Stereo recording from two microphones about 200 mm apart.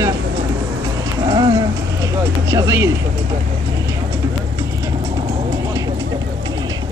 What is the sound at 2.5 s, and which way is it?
Speech, 15° right (ahead or behind).